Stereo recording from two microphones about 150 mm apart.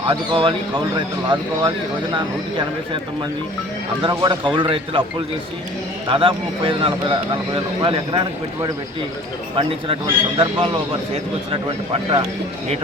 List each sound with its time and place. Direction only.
0.1 s speech: 35° right (ahead or behind)
6.1 s speech: 35° right (ahead or behind)